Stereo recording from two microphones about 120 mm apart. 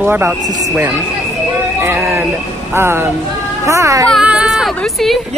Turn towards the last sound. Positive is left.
turn(degrees=0)  # may be behind; listen again after turning